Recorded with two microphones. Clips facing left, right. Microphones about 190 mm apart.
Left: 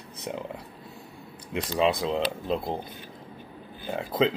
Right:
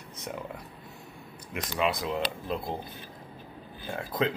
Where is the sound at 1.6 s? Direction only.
30° left (ahead or behind).